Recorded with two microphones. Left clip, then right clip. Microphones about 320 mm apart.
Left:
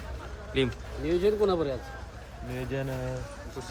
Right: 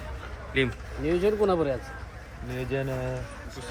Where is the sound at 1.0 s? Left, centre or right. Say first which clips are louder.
Right 1 dB; right.